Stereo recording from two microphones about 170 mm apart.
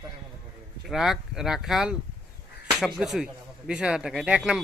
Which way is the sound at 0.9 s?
Centre (ahead or behind).